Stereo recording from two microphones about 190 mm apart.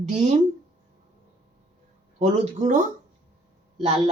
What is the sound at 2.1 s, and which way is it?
Speech, 40° right (ahead or behind).